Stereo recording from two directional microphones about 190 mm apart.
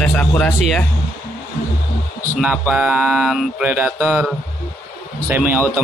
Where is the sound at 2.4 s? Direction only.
5° right (ahead or behind).